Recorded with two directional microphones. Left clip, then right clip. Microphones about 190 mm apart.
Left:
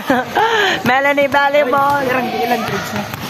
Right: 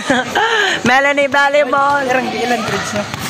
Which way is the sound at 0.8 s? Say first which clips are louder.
Right 1 dB; 15° right (ahead or behind).